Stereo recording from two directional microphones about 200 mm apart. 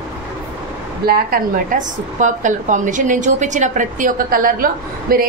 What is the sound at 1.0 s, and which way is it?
A woman's voice, 50° right (ahead or behind).